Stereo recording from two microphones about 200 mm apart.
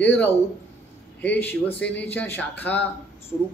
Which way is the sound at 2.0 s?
10° left (ahead or behind).